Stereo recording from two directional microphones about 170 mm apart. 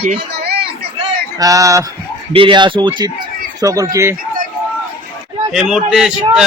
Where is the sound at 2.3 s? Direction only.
30° right (ahead or behind).